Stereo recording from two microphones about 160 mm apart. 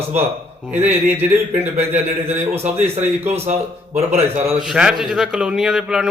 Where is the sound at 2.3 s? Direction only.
45° right (ahead or behind).